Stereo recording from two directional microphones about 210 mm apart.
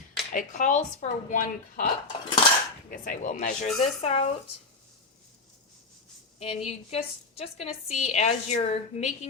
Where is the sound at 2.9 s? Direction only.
40° left (ahead or behind).